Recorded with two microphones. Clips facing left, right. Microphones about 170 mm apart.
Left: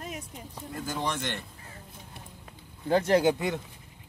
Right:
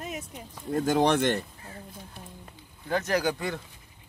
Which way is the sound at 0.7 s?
65° right (ahead or behind).